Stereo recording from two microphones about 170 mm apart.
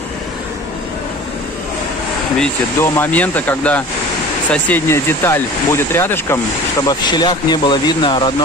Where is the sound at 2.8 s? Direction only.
10° left (ahead or behind).